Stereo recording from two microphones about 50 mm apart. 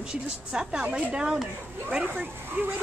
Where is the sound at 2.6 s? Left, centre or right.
Right.